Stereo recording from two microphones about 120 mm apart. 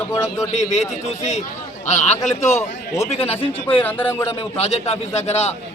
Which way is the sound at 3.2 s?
55° left (ahead or behind).